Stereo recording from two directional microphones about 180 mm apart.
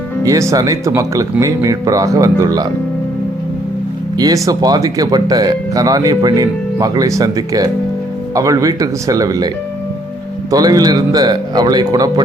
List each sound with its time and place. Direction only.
0.3 s speech: 20° right (ahead or behind)
4.2 s speech: 20° right (ahead or behind)
10.5 s speech: 20° right (ahead or behind)